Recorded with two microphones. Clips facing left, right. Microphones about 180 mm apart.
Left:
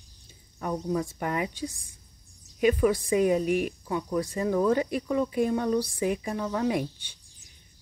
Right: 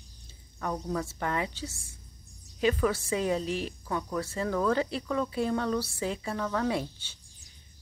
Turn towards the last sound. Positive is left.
turn(degrees=15)  # may be behind; listen again after turning